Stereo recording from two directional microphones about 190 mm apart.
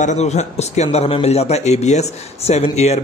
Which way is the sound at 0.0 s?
35° left (ahead or behind).